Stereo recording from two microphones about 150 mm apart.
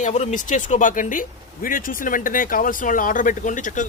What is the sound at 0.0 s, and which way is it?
Speech, 50° left (ahead or behind).